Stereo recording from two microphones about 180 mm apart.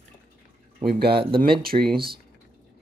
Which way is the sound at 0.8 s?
60° right (ahead or behind).